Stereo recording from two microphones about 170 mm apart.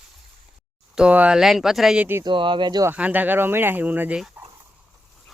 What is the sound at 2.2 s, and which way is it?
Speech, 30° right (ahead or behind).